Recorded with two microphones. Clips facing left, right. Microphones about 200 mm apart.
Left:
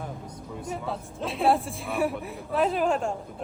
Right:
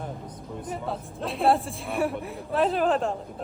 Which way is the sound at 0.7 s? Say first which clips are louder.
Even; centre (ahead or behind).